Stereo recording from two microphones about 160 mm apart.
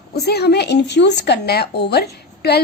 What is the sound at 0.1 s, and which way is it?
A woman's voice, 85° left.